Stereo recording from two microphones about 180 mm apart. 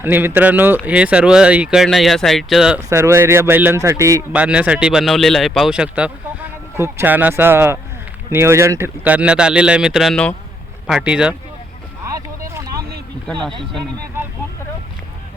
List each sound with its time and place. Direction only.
0.0 s speech: 10° right (ahead or behind)
2.9 s speech: 15° right (ahead or behind)
12.1 s a sound: 20° right (ahead or behind)